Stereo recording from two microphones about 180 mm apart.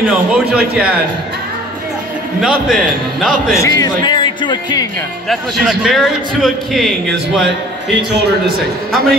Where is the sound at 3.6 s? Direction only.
20° left (ahead or behind).